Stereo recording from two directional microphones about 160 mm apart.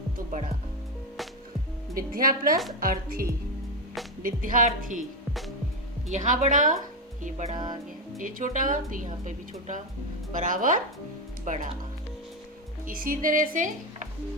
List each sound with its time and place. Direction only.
2.0 s a woman's voice: 60° right (ahead or behind)
6.1 s a woman's voice: 55° right (ahead or behind)
7.5 s music: 30° right (ahead or behind)
8.2 s a woman's voice: 55° right (ahead or behind)
12.8 s speech: 60° right (ahead or behind)